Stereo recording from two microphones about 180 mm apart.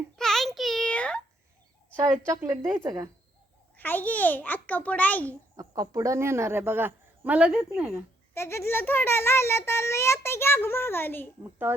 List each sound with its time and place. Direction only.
0.2 s a sound: centre (ahead or behind)
2.1 s a man's voice: 15° right (ahead or behind)
3.8 s a child's voice: 10° left (ahead or behind)
5.5 s a man's voice: 20° right (ahead or behind); by 7.9 s 5° right (ahead or behind)
8.3 s a child's voice: 15° left (ahead or behind)